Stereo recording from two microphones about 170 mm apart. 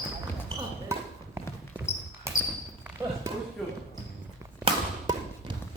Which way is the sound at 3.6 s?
Centre (ahead or behind).